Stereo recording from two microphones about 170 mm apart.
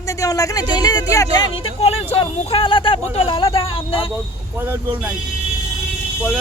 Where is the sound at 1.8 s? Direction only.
35° left (ahead or behind).